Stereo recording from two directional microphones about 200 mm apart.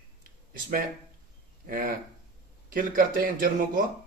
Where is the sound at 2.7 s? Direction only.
45° right (ahead or behind).